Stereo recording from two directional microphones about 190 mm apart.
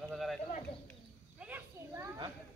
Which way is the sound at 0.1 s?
Centre (ahead or behind).